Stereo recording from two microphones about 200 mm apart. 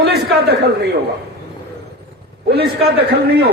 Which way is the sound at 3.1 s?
50° right (ahead or behind).